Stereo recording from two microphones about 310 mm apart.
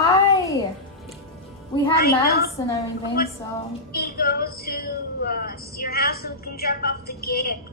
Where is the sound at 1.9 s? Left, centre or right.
Left.